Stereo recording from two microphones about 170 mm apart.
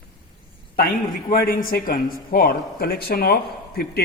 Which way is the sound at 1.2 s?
60° left (ahead or behind).